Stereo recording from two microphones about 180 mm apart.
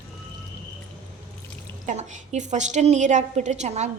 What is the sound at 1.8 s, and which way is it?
A woman's voice, 40° right (ahead or behind).